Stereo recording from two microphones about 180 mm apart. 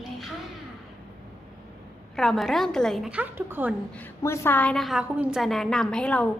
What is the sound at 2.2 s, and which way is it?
A woman's voice, centre (ahead or behind).